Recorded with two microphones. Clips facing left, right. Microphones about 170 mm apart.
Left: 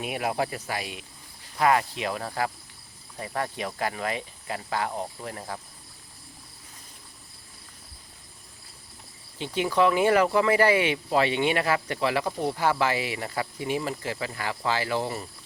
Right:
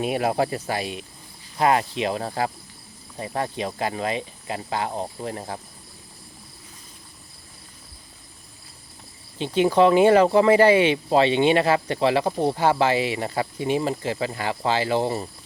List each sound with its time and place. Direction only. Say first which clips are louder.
0.0 s speech: right 6 dB; 30° right (ahead or behind)
9.4 s speech: right 6 dB; 25° right (ahead or behind)